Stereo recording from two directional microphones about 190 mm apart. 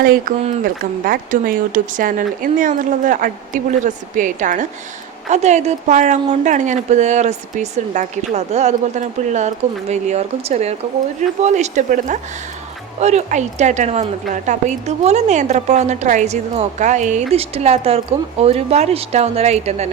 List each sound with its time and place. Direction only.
0.0 s a woman's voice: 50° right (ahead or behind); by 19.9 s 35° right (ahead or behind)